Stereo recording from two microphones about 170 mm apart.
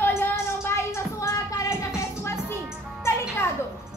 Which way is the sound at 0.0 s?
15° left (ahead or behind).